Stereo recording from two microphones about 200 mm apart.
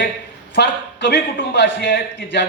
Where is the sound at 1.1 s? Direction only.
60° left (ahead or behind).